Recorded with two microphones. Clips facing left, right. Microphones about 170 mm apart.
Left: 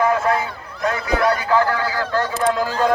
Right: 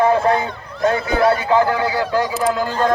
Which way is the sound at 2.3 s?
Centre (ahead or behind).